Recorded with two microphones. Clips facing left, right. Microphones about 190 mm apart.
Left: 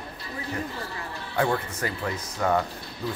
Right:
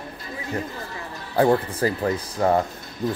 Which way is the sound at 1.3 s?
35° right (ahead or behind).